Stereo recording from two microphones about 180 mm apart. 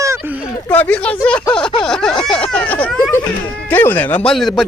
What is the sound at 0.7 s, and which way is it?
Speech, 10° left (ahead or behind).